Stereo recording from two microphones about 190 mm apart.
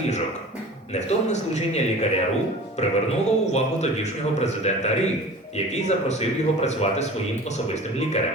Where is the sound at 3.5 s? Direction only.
35° left (ahead or behind).